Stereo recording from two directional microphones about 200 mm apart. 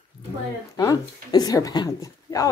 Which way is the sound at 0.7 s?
20° left (ahead or behind).